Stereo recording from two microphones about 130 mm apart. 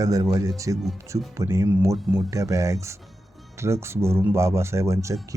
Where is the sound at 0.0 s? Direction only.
25° right (ahead or behind).